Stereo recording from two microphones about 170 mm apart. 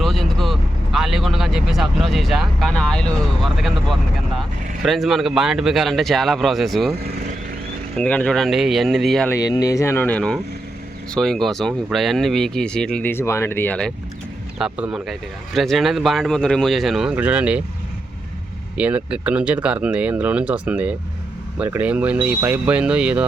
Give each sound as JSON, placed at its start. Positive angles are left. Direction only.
{"t": 0.0, "sound": "speech", "side_deg": 0}
{"t": 7.0, "sound": "vehicle", "side_deg": -60}
{"t": 7.9, "sound": "speech", "side_deg": 10}
{"t": 9.3, "sound": "speech", "side_deg": 20}
{"t": 14.6, "sound": "speech", "side_deg": -5}
{"t": 18.8, "sound": "speech", "side_deg": -5}